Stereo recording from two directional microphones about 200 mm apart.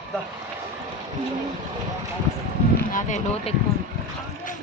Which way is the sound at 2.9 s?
40° left (ahead or behind).